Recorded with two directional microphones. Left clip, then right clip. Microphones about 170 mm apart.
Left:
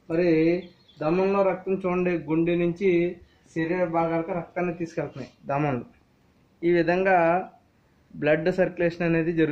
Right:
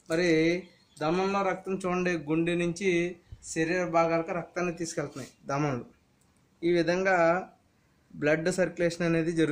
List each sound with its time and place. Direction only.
0.1 s speech: 25° right (ahead or behind)
1.7 s speech: 40° right (ahead or behind)